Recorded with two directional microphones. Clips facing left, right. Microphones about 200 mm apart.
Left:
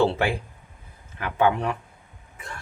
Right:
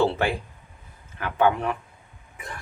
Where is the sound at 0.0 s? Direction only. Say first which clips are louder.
Left 1 dB; 15° left (ahead or behind).